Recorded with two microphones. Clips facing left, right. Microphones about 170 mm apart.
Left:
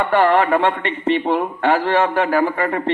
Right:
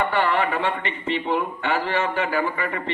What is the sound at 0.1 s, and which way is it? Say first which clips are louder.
A man's voice: left 7 dB; 65° left (ahead or behind).